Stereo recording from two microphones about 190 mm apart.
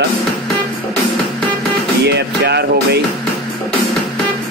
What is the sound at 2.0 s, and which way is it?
Speech, 60° right (ahead or behind).